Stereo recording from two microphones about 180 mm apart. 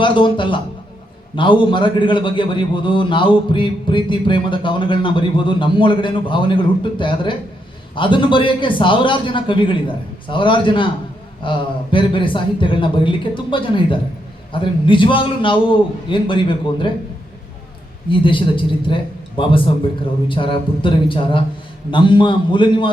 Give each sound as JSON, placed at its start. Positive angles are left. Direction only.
{"t": 0.0, "sound": "a man's voice", "side_deg": 25}
{"t": 18.1, "sound": "a man's voice", "side_deg": 30}